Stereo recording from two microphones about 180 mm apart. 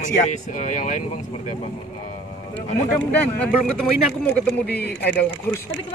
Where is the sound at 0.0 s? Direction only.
45° left (ahead or behind).